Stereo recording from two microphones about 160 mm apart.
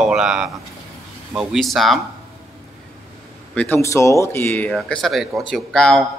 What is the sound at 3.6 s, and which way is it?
Speech, 15° left (ahead or behind).